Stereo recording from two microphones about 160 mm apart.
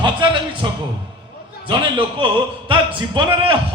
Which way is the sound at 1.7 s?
30° right (ahead or behind).